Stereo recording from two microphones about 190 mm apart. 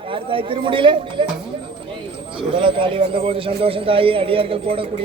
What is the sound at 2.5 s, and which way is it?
Speech, 25° right (ahead or behind).